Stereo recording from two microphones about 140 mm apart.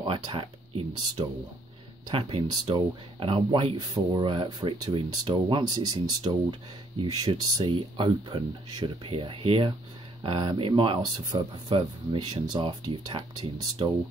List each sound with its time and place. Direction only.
0.0 s speech: 35° right (ahead or behind)